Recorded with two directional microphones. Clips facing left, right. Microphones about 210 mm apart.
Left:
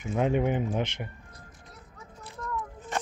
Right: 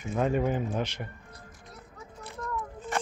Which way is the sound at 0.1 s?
15° left (ahead or behind).